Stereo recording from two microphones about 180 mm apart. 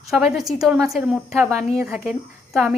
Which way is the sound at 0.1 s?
Centre (ahead or behind).